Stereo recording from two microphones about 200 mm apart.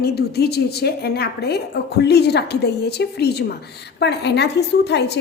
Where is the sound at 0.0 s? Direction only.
55° left (ahead or behind).